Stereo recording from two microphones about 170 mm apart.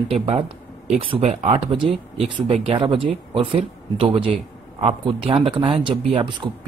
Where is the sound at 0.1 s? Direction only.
35° right (ahead or behind).